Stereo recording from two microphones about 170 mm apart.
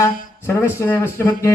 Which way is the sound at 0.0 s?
15° left (ahead or behind).